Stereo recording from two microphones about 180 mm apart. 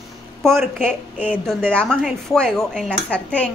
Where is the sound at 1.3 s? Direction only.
5° left (ahead or behind).